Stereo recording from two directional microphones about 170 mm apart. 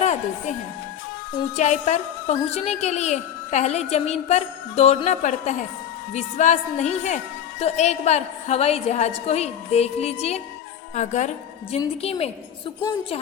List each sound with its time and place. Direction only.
0.0 s music: 45° left (ahead or behind)
1.5 s a woman's voice: 45° left (ahead or behind)